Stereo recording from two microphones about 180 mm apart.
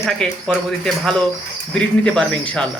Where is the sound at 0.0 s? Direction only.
Centre (ahead or behind).